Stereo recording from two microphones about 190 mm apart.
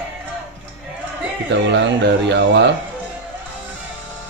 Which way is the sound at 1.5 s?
65° right (ahead or behind).